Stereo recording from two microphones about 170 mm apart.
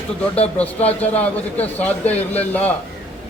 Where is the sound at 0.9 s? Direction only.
10° left (ahead or behind).